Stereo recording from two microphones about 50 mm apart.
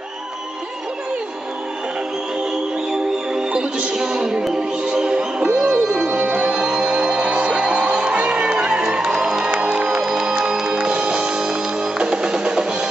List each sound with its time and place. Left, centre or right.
2.9 s music: centre